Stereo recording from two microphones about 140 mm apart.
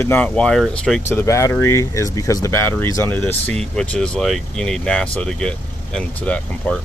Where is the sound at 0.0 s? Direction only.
10° left (ahead or behind).